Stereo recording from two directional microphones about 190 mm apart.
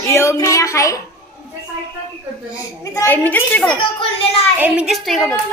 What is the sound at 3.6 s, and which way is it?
Speech, 25° left (ahead or behind).